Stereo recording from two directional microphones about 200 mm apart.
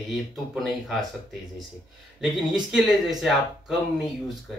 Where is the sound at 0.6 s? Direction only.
Centre (ahead or behind).